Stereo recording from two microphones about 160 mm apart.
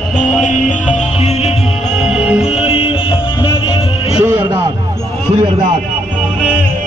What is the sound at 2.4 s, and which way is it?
Music, 35° left (ahead or behind).